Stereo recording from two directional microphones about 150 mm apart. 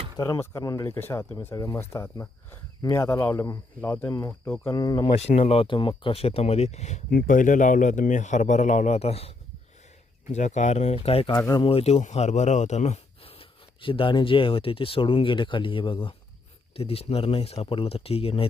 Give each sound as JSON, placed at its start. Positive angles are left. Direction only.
{"t": 0.2, "sound": "speech", "side_deg": 25}
{"t": 4.7, "sound": "speech", "side_deg": 25}
{"t": 5.1, "sound": "speech", "side_deg": 45}
{"t": 7.1, "sound": "a man's voice", "side_deg": 65}
{"t": 11.3, "sound": "speech", "side_deg": 25}
{"t": 11.7, "sound": "speech", "side_deg": 45}